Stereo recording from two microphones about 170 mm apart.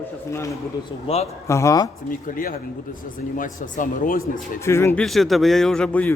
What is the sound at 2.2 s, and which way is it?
Speech, 55° left (ahead or behind).